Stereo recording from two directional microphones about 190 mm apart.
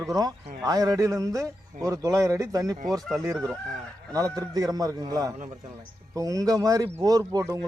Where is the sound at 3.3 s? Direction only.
Centre (ahead or behind).